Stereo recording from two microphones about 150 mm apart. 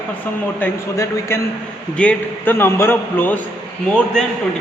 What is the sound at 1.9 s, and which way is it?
A man's voice, 10° left (ahead or behind).